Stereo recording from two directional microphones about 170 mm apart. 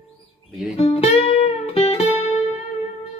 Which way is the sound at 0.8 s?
35° left (ahead or behind).